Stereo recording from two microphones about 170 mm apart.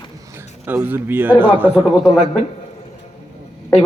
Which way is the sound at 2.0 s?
45° left (ahead or behind).